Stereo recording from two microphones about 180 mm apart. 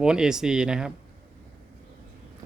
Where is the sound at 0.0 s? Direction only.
5° right (ahead or behind).